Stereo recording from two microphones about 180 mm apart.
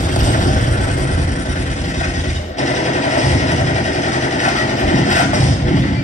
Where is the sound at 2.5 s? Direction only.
40° left (ahead or behind).